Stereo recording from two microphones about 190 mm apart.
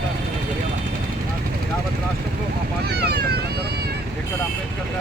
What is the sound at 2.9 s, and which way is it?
Speech, 60° right (ahead or behind).